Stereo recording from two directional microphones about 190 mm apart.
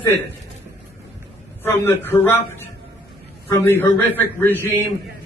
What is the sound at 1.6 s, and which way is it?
Speech, 10° left (ahead or behind).